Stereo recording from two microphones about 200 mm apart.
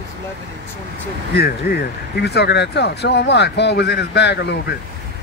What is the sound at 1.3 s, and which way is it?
Speech, 50° left (ahead or behind).